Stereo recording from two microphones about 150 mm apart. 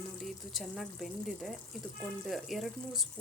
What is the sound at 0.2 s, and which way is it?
Speech, centre (ahead or behind).